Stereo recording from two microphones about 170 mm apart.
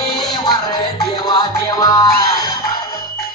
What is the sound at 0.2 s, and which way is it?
Music, 25° left (ahead or behind).